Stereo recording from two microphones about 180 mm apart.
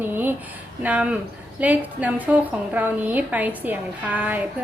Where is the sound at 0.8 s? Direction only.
10° right (ahead or behind).